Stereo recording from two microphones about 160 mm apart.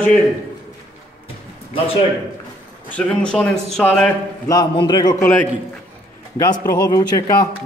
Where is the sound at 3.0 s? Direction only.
5° left (ahead or behind).